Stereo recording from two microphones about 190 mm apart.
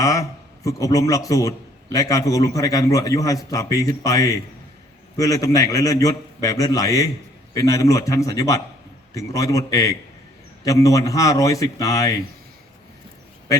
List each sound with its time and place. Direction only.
0.0 s a man's voice: 15° left (ahead or behind)